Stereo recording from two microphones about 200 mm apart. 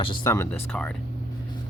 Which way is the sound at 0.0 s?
25° left (ahead or behind).